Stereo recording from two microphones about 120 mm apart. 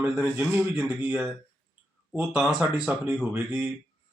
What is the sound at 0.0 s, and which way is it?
Speech, 10° right (ahead or behind).